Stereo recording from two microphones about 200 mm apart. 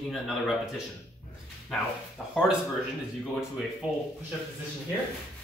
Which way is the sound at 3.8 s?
5° right (ahead or behind).